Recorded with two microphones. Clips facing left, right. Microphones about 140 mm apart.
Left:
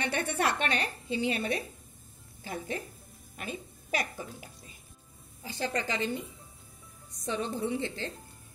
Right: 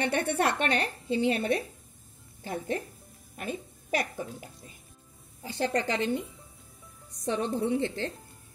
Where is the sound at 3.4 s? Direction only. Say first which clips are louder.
Right 4 dB; 45° right (ahead or behind).